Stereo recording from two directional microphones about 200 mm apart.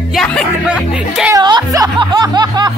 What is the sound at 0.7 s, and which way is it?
Speech, 5° right (ahead or behind).